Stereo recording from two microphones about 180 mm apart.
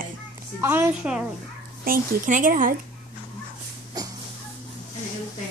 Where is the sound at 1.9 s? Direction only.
45° right (ahead or behind).